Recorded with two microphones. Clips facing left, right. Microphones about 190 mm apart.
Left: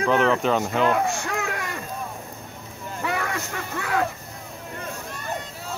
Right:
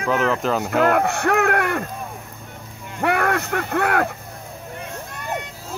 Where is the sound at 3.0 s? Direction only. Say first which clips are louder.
Right 8 dB; 65° right (ahead or behind).